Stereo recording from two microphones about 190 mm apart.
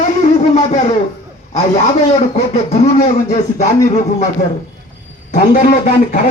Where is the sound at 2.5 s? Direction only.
35° left (ahead or behind).